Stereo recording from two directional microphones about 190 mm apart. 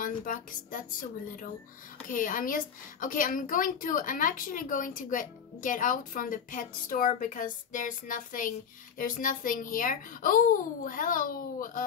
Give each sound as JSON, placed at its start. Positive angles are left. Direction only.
{"t": 0.0, "sound": "a woman's voice", "side_deg": 45}
{"t": 2.0, "sound": "a woman's voice", "side_deg": 45}